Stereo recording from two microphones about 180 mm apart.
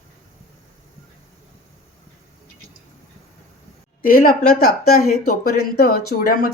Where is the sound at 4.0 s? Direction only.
50° left (ahead or behind).